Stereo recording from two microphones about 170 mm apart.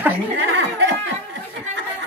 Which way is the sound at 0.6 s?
90° right.